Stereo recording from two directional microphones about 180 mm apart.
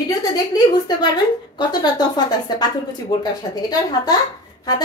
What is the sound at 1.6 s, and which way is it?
A woman's voice, 25° left (ahead or behind).